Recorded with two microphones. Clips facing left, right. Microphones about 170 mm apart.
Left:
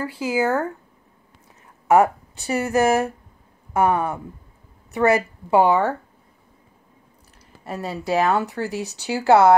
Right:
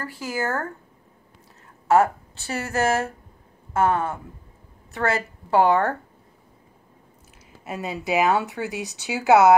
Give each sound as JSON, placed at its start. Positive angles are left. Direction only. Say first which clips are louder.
{"t": 0.2, "sound": "a woman's voice", "louder": "left 6 dB", "side_deg": 15}
{"t": 1.9, "sound": "a woman's voice", "louder": "left 2 dB", "side_deg": 15}
{"t": 7.6, "sound": "speech", "louder": "left 1 dB", "side_deg": 0}